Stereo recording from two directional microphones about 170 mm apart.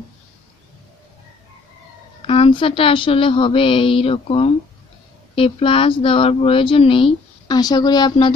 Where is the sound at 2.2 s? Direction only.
30° left (ahead or behind).